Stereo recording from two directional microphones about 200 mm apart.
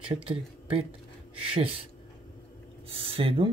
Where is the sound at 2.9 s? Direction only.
30° right (ahead or behind).